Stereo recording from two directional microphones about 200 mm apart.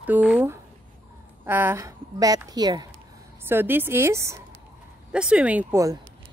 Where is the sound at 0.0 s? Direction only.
10° right (ahead or behind).